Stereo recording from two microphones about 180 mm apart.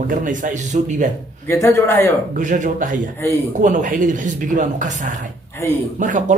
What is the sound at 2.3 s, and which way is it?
Speech, 45° right (ahead or behind).